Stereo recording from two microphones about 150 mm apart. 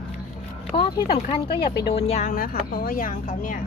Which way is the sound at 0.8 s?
40° left (ahead or behind).